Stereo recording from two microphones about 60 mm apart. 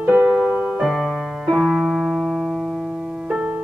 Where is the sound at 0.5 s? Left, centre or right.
Centre.